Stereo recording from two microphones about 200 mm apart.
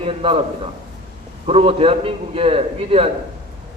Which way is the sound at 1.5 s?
30° right (ahead or behind).